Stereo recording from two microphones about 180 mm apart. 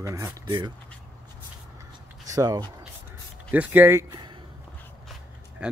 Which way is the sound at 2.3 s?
20° right (ahead or behind).